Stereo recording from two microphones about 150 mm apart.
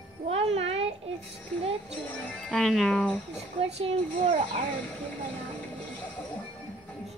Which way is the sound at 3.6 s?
45° right (ahead or behind).